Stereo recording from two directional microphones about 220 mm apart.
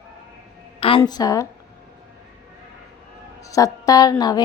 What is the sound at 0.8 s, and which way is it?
Speech, 25° left (ahead or behind).